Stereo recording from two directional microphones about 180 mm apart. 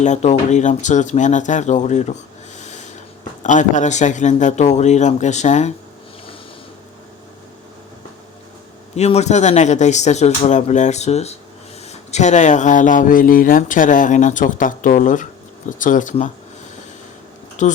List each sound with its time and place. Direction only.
0.0 s speech: 40° left (ahead or behind)
2.6 s snort: 40° left (ahead or behind)
3.4 s speech: 45° left (ahead or behind)
9.0 s speech: 35° left (ahead or behind)
17.6 s speech: 45° left (ahead or behind)